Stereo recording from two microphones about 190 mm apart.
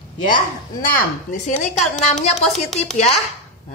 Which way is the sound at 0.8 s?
45° left (ahead or behind).